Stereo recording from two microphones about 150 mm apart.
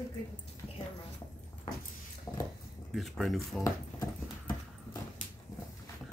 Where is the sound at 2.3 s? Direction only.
20° left (ahead or behind).